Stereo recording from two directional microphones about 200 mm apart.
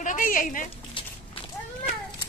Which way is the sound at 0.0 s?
40° left (ahead or behind).